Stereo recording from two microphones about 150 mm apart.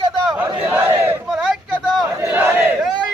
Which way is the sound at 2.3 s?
10° right (ahead or behind).